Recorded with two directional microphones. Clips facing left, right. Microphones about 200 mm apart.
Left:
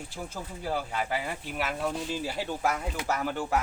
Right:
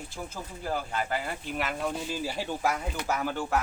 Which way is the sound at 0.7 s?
5° left (ahead or behind).